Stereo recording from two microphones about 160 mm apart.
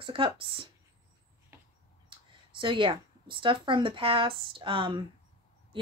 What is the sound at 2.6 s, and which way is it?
A woman's voice, 30° right (ahead or behind).